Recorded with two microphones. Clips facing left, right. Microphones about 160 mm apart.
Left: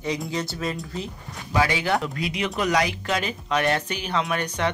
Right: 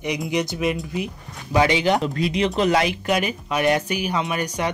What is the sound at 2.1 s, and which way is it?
Speech, 35° right (ahead or behind).